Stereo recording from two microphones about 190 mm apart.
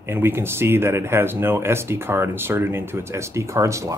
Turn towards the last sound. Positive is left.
turn(degrees=-15)  # may be behind; listen again after turning